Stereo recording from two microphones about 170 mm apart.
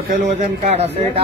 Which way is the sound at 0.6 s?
40° right (ahead or behind).